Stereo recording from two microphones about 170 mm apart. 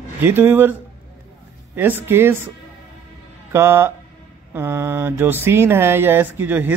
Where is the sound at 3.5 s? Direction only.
15° right (ahead or behind).